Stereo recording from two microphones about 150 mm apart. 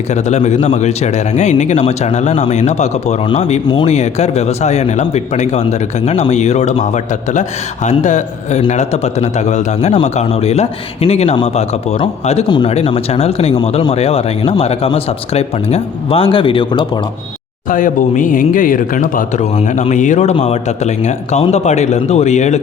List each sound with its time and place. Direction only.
0.1 s speech: 50° left (ahead or behind); by 17.0 s 35° left (ahead or behind)
17.7 s speech: 65° left (ahead or behind)